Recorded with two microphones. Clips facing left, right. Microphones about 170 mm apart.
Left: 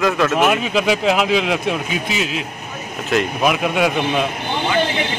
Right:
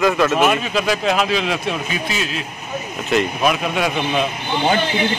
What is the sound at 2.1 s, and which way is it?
Speech, 70° left (ahead or behind).